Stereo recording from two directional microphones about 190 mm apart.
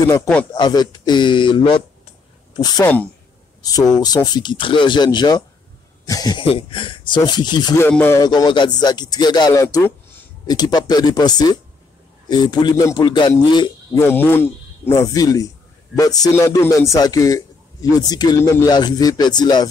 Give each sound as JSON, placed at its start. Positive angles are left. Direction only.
{"t": 0.1, "sound": "a man's voice", "side_deg": 10}
{"t": 2.8, "sound": "a man's voice", "side_deg": 10}
{"t": 3.6, "sound": "a man's voice", "side_deg": 20}
{"t": 8.2, "sound": "speech", "side_deg": 20}
{"t": 13.9, "sound": "a man's voice", "side_deg": 10}